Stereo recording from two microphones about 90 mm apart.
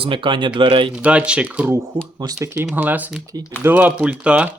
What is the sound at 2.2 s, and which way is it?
Speech, 35° right (ahead or behind).